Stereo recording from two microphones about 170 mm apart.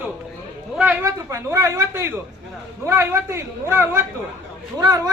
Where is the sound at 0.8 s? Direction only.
10° right (ahead or behind).